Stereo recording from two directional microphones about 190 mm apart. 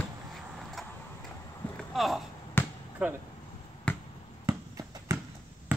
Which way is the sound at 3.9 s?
5° left (ahead or behind).